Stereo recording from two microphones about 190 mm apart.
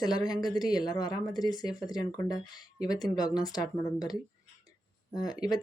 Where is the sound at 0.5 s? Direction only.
20° left (ahead or behind).